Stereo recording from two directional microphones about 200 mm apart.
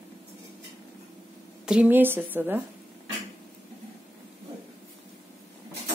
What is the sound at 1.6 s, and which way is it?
Speech, 5° right (ahead or behind).